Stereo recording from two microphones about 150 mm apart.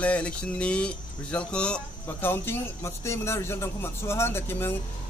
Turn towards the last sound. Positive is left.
turn(degrees=15)  # may be behind; listen again after turning